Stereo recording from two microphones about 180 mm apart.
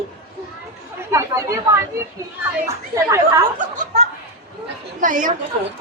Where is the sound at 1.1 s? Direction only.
15° right (ahead or behind).